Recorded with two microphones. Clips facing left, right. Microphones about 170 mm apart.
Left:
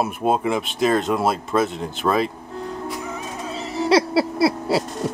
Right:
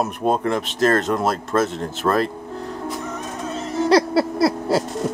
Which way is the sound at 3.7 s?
Centre (ahead or behind).